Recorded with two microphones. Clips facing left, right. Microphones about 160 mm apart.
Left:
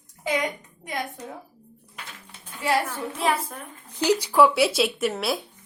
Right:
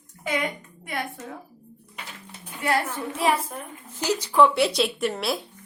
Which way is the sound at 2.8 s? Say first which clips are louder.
Right 1 dB; 10° right (ahead or behind).